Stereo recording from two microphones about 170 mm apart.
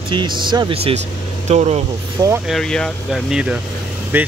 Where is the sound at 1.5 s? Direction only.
40° right (ahead or behind).